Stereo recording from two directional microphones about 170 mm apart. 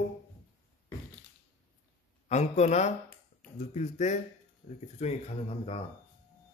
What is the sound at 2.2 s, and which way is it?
A man's voice, 45° left (ahead or behind).